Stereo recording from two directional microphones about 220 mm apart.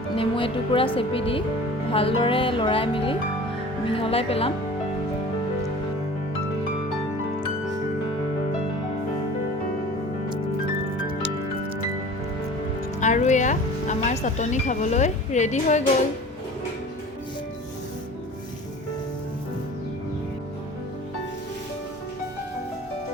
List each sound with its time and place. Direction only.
0.2 s speech: 25° left (ahead or behind)
13.0 s speech: 35° left (ahead or behind)